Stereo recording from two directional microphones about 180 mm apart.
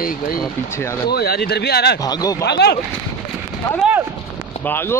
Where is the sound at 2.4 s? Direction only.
65° left (ahead or behind).